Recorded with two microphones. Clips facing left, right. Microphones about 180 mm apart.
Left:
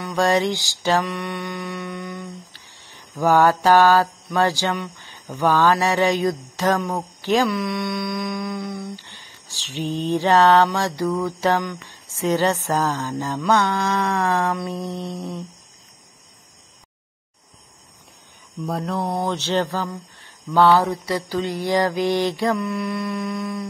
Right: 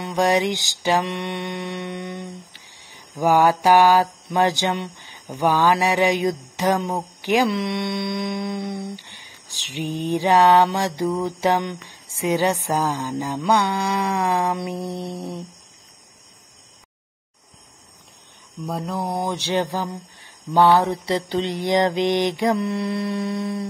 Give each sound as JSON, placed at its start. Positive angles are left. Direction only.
{"t": 0.0, "sound": "mantra", "side_deg": -15}
{"t": 1.0, "sound": "humming", "side_deg": -25}
{"t": 4.9, "sound": "mantra", "side_deg": -15}
{"t": 6.9, "sound": "speech", "side_deg": -15}
{"t": 7.4, "sound": "humming", "side_deg": -25}
{"t": 8.9, "sound": "mantra", "side_deg": -15}
{"t": 18.7, "sound": "speech", "side_deg": 0}
{"t": 19.1, "sound": "mantra", "side_deg": -15}
{"t": 20.5, "sound": "humming", "side_deg": -15}
{"t": 22.6, "sound": "humming", "side_deg": -30}